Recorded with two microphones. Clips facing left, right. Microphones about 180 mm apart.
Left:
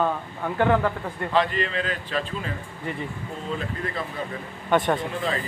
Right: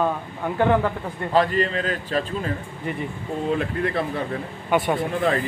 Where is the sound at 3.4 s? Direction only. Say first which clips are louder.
Right 7 dB; 55° right (ahead or behind).